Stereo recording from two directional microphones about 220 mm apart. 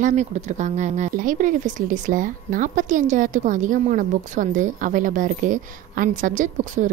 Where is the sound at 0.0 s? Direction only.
30° right (ahead or behind).